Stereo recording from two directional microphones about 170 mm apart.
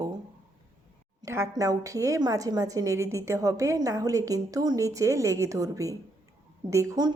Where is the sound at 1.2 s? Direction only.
15° right (ahead or behind).